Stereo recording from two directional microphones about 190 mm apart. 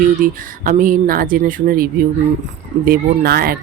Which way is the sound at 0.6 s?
45° right (ahead or behind).